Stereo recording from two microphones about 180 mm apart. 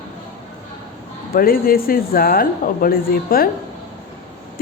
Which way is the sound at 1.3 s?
55° left (ahead or behind).